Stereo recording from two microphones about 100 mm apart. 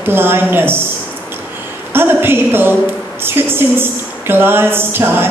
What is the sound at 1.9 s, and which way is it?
A woman's voice, 20° right (ahead or behind).